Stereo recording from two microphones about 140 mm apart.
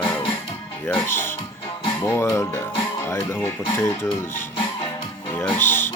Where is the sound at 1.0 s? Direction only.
15° left (ahead or behind).